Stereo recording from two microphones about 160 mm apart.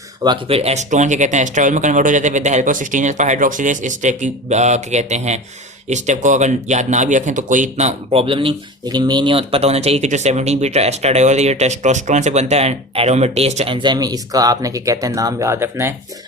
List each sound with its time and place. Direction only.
0.2 s speech: 30° right (ahead or behind)
13.7 s speech: 30° right (ahead or behind)